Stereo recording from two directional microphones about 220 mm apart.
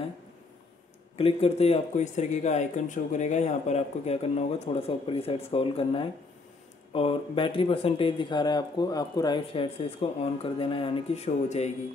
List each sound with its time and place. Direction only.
1.1 s speech: 25° left (ahead or behind)